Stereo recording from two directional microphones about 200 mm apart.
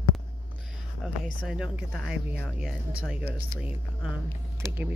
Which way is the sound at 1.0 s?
Centre (ahead or behind).